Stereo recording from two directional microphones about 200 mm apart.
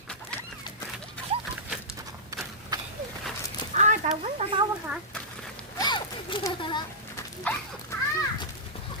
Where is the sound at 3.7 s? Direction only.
35° right (ahead or behind).